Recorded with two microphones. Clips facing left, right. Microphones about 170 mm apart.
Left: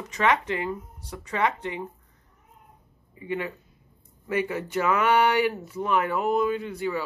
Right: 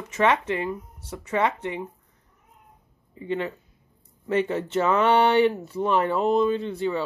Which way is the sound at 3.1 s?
25° right (ahead or behind).